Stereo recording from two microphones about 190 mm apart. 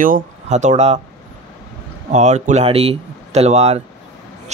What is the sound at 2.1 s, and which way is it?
Speech, 35° right (ahead or behind).